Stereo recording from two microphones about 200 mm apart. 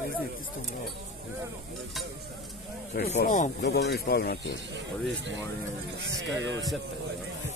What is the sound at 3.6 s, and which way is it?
Speech, 55° left (ahead or behind).